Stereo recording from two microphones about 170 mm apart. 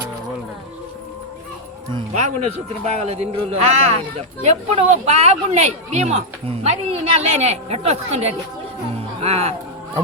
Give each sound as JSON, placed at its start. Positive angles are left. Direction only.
{"t": 2.1, "sound": "speech", "side_deg": -45}